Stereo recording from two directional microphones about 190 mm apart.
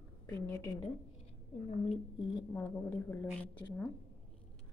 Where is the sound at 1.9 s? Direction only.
25° left (ahead or behind).